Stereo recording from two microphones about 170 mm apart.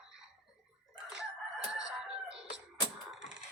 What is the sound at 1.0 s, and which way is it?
Chicken, 5° right (ahead or behind).